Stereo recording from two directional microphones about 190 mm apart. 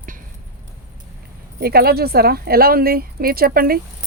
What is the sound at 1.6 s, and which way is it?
Speech, 55° right (ahead or behind).